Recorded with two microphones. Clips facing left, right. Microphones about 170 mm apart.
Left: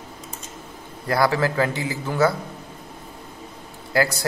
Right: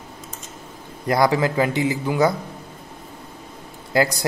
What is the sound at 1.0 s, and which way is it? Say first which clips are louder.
A man's voice: right 2 dB; 20° right (ahead or behind).